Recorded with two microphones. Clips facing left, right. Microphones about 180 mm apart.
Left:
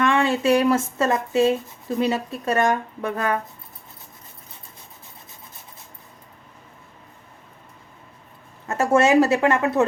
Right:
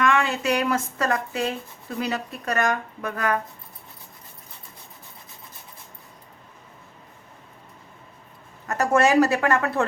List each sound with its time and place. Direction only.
0.0 s speech: 30° left (ahead or behind)
8.6 s speech: 25° left (ahead or behind)